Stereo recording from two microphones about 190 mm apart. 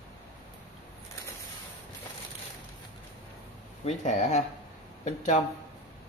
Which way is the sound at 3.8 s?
35° left (ahead or behind).